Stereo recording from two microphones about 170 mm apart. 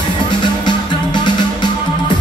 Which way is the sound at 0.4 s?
25° left (ahead or behind).